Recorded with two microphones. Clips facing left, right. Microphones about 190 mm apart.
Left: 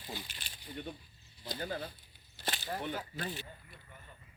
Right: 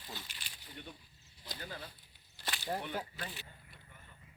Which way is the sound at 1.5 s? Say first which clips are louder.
Left 8 dB; 45° left (ahead or behind).